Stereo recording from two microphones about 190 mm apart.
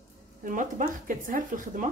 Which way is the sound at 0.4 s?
45° right (ahead or behind).